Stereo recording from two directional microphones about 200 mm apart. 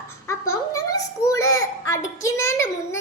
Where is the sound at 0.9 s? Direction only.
15° left (ahead or behind).